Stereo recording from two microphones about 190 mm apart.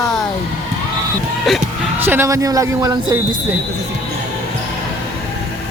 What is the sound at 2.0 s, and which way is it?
Speech, 10° right (ahead or behind).